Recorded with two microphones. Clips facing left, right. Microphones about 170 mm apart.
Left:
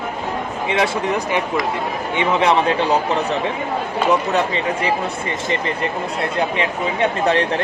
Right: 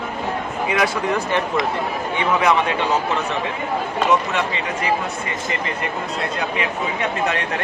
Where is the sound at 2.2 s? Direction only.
30° left (ahead or behind).